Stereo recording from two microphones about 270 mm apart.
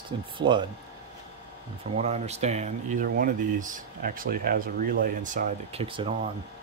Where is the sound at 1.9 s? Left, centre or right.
Right.